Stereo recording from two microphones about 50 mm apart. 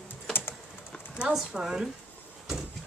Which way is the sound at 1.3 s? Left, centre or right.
Centre.